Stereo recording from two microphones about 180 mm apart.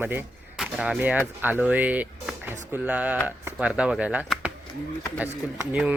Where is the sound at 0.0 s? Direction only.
10° right (ahead or behind).